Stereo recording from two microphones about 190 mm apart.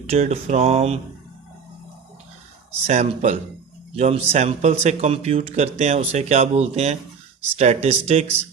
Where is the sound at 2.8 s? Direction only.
35° right (ahead or behind).